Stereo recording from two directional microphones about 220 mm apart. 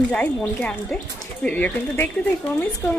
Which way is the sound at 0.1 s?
5° left (ahead or behind).